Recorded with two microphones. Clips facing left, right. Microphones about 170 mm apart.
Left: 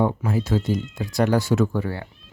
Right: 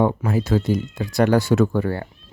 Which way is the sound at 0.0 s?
65° right (ahead or behind).